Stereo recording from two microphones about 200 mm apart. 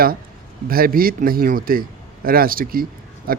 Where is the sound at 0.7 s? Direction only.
45° right (ahead or behind).